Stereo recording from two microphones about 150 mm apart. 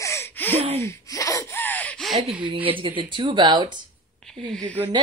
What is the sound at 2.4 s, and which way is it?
Snicker, 35° right (ahead or behind).